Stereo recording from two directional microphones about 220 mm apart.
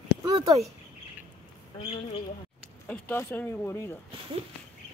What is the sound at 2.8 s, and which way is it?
Speech, 10° left (ahead or behind).